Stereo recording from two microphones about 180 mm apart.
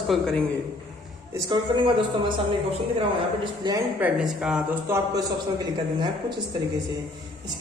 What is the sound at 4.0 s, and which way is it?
Speech, 5° right (ahead or behind).